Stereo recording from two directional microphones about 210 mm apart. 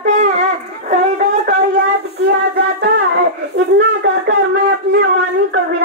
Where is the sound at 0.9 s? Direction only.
35° right (ahead or behind).